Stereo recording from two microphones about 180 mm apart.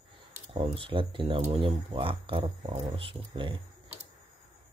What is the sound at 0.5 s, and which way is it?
Speech, 30° right (ahead or behind).